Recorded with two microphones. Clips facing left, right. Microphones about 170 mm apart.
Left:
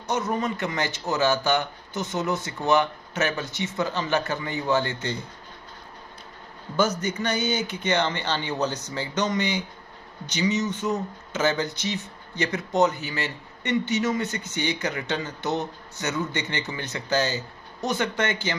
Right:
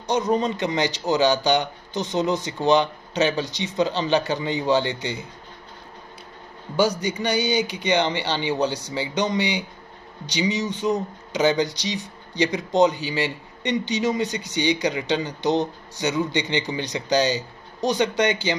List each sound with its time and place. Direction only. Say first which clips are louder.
0.1 s a man's voice: right 5 dB; 15° right (ahead or behind)
6.8 s speech: right 3 dB; 10° right (ahead or behind)